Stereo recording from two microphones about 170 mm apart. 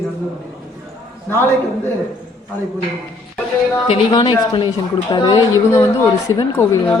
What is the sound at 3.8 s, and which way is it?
A woman's voice, 30° left (ahead or behind).